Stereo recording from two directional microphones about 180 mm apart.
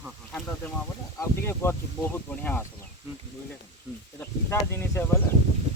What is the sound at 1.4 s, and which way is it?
Speech, 15° left (ahead or behind).